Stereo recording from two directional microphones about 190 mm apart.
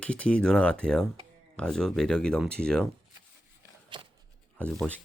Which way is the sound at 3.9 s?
25° right (ahead or behind).